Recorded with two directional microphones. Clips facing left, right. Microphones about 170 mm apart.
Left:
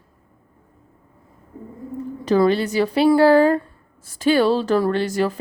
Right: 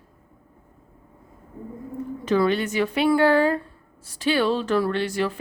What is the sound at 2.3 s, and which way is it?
A woman's voice, 35° left (ahead or behind).